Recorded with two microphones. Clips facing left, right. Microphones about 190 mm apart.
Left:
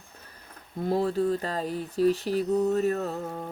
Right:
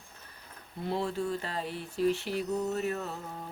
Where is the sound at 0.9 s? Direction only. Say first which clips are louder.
Left 7 dB; 40° left (ahead or behind).